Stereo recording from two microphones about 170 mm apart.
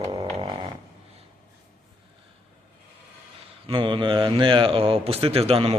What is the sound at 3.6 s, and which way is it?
A man's voice, 30° right (ahead or behind).